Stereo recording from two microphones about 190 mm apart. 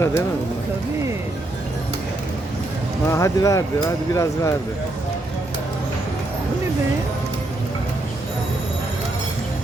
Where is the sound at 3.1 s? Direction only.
15° left (ahead or behind).